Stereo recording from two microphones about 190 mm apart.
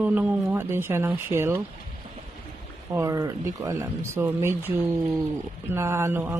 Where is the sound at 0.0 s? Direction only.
10° right (ahead or behind).